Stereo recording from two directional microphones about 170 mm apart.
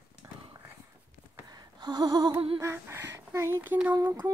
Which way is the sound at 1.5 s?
25° right (ahead or behind).